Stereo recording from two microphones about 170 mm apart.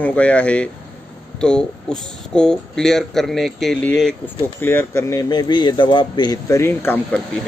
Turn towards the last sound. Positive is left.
turn(degrees=10)  # may be behind; listen again after turning